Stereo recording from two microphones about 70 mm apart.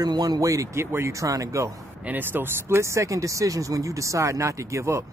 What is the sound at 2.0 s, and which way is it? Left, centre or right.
Speech, right.